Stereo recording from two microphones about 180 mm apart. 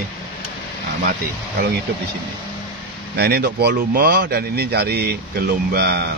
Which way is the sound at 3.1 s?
65° right (ahead or behind).